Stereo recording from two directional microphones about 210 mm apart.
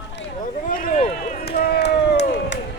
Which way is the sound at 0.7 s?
40° left (ahead or behind).